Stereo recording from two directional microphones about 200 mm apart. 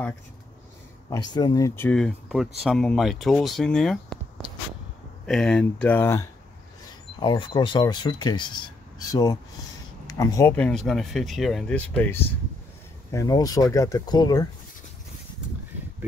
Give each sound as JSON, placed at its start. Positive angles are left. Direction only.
{"t": 1.1, "sound": "speech", "side_deg": 20}
{"t": 5.2, "sound": "speech", "side_deg": 5}
{"t": 7.2, "sound": "speech", "side_deg": 25}